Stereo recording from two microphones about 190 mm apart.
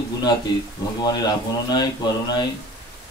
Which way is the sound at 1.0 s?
20° left (ahead or behind).